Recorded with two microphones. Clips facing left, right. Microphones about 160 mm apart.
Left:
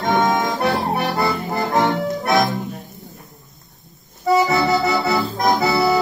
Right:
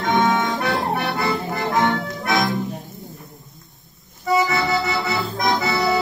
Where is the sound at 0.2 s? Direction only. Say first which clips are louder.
Left 1 dB; 35° left (ahead or behind).